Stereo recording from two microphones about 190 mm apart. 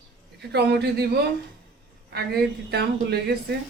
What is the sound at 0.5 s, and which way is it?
A woman's voice, 60° right (ahead or behind).